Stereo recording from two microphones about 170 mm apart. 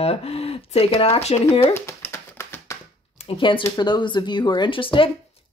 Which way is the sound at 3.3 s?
30° left (ahead or behind).